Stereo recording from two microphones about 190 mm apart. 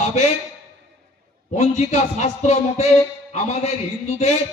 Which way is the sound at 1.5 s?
35° left (ahead or behind).